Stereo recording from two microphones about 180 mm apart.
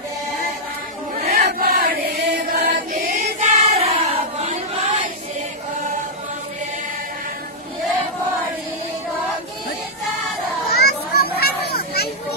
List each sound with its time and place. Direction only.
1.1 s chant: 40° right (ahead or behind)
1.6 s chant: 55° right (ahead or behind)
2.9 s choir: 50° right (ahead or behind); by 5.0 s 35° right (ahead or behind)
10.8 s children playing: 60° left (ahead or behind)